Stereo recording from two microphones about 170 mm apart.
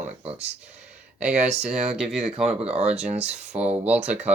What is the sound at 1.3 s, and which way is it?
Speech, 40° right (ahead or behind).